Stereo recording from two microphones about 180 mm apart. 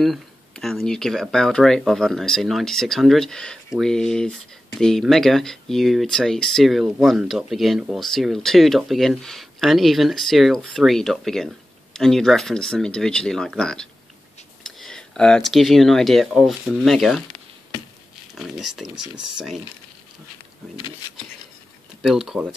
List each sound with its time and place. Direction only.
0.0 s speech: centre (ahead or behind)
18.3 s speech: centre (ahead or behind)
20.7 s speech: 25° left (ahead or behind)
22.0 s speech: centre (ahead or behind)